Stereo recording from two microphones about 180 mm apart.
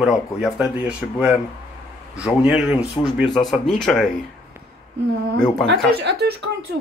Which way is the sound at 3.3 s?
Centre (ahead or behind).